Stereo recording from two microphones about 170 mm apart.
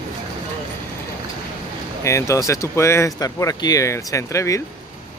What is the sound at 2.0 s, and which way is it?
Speech, 20° left (ahead or behind).